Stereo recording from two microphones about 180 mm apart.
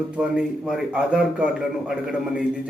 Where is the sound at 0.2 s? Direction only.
5° right (ahead or behind).